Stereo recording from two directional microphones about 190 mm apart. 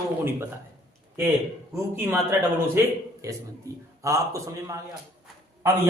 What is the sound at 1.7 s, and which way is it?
A man's voice, 10° right (ahead or behind).